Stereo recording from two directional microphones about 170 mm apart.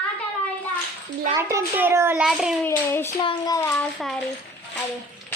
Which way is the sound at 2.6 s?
15° left (ahead or behind).